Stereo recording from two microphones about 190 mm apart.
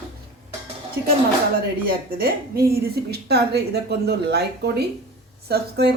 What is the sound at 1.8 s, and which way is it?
A woman's voice, 50° right (ahead or behind).